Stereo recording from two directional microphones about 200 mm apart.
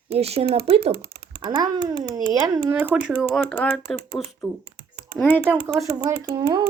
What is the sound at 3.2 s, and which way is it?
Speech, 5° left (ahead or behind).